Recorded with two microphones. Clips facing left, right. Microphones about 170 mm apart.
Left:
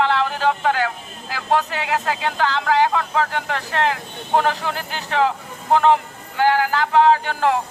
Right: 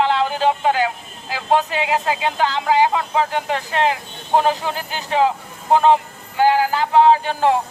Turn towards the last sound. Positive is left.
turn(degrees=-20)  # may be behind; listen again after turning